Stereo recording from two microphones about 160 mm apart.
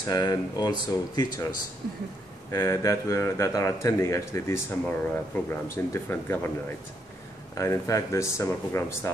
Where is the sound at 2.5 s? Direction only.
20° left (ahead or behind).